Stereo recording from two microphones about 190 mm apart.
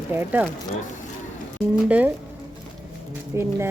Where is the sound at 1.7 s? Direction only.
10° right (ahead or behind).